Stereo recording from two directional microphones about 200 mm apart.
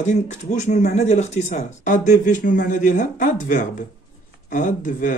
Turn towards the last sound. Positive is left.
turn(degrees=40)  # may be behind; listen again after turning